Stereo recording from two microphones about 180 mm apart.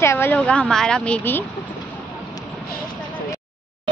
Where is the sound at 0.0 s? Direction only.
15° left (ahead or behind).